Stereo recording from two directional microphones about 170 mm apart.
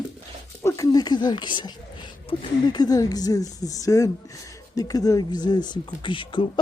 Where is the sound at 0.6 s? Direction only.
20° left (ahead or behind).